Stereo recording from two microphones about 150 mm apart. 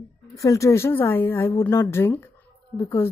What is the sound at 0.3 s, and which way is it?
Speech, 20° left (ahead or behind).